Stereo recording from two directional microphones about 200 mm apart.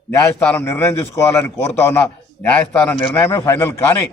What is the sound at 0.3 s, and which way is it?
A man's voice, 10° left (ahead or behind).